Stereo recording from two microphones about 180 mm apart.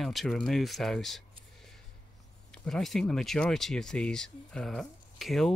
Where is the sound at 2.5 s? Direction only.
Centre (ahead or behind).